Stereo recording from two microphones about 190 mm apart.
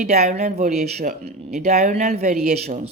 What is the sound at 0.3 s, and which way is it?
Speech, 35° right (ahead or behind).